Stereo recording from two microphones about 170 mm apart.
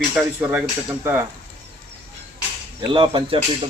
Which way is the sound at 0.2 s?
10° right (ahead or behind).